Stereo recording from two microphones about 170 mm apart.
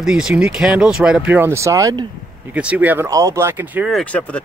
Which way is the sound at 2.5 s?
10° right (ahead or behind).